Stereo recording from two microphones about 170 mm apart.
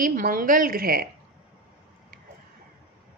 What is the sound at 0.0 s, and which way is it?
A woman's voice, 55° right (ahead or behind).